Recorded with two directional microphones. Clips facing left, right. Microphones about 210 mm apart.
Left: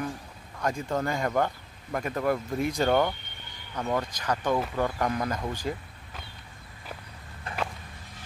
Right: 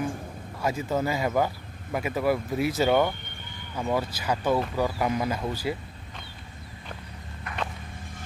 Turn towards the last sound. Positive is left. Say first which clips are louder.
# even
turn(degrees=30)  # may be behind; listen again after turning